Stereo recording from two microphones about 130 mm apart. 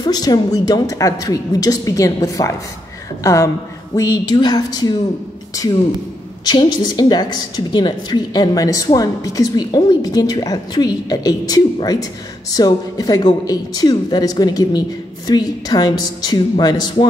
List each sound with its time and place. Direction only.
0.0 s a woman's voice: 30° left (ahead or behind)
6.4 s a woman's voice: 35° left (ahead or behind)